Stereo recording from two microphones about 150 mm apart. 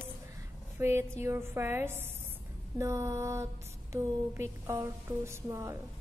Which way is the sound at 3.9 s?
20° right (ahead or behind).